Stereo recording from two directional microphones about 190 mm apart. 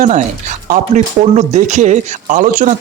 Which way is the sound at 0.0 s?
40° right (ahead or behind).